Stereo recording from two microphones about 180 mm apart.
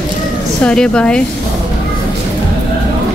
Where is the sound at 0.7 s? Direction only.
5° left (ahead or behind).